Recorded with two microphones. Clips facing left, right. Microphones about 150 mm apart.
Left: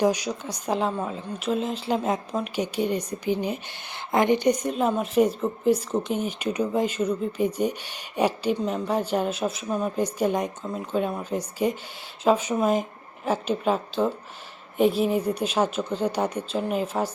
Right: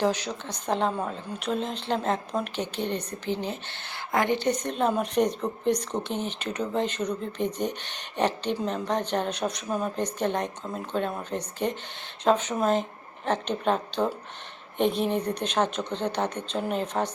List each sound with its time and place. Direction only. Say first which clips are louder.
0.0 s speech: left 3 dB; 10° left (ahead or behind)